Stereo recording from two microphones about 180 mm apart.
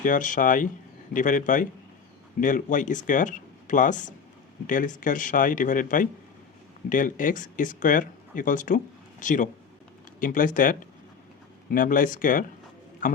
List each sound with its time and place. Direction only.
0.0 s a man's voice: 45° left (ahead or behind)